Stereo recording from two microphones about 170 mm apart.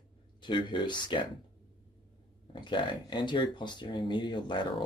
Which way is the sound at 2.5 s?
30° left (ahead or behind).